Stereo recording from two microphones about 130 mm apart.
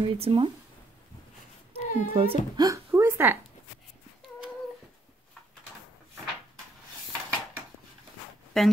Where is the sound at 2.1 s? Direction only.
45° right (ahead or behind).